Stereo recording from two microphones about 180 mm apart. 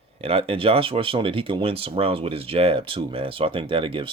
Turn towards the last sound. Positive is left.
turn(degrees=-30)  # may be behind; listen again after turning